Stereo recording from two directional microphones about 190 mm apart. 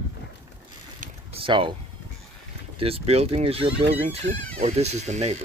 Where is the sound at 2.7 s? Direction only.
30° right (ahead or behind).